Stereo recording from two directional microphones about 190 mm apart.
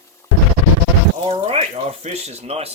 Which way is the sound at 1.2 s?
30° right (ahead or behind).